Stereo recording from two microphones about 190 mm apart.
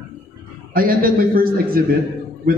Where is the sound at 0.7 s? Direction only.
50° right (ahead or behind).